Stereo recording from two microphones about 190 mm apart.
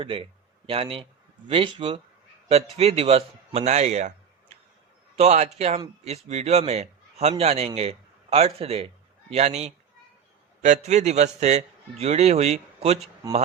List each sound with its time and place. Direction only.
0.0 s a man's voice: 30° right (ahead or behind)
5.1 s a man's voice: 35° right (ahead or behind)